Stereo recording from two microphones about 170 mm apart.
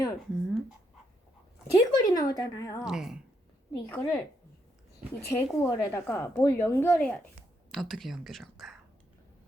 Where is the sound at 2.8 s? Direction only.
5° right (ahead or behind).